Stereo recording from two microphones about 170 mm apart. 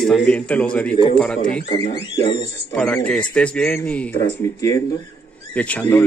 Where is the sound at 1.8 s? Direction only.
30° left (ahead or behind).